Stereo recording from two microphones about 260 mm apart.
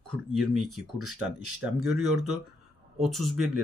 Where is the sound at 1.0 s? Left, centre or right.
Right.